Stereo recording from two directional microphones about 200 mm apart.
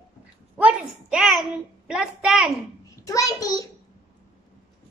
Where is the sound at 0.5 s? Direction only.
5° right (ahead or behind).